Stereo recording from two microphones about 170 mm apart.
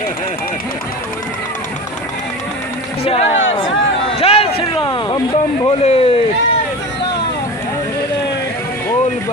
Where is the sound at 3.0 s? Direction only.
35° left (ahead or behind).